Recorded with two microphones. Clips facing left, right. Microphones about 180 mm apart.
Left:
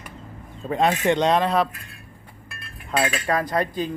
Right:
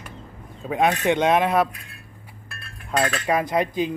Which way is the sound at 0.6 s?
5° right (ahead or behind).